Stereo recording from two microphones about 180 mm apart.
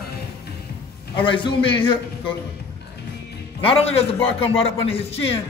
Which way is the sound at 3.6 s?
30° left (ahead or behind).